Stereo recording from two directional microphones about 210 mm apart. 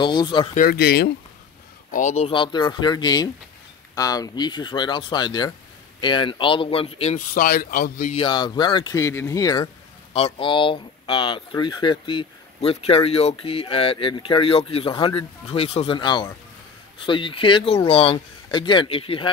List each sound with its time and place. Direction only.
0.0 s speech: 20° left (ahead or behind)
0.6 s speech: 45° left (ahead or behind)
1.9 s speech: 35° left (ahead or behind)
8.2 s speech: 20° left (ahead or behind)
10.1 s speech: 30° left (ahead or behind)